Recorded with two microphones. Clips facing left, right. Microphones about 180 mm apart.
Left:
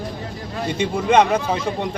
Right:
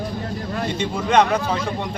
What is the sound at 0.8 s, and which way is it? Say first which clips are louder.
Speech: left 2 dB; 15° left (ahead or behind).